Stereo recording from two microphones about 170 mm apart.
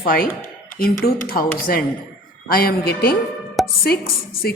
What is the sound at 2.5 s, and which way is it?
Speech, 65° left (ahead or behind).